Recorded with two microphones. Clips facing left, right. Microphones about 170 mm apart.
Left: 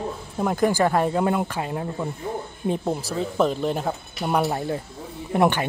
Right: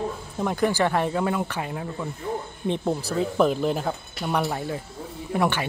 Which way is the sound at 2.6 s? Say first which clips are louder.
Even; 5° left (ahead or behind).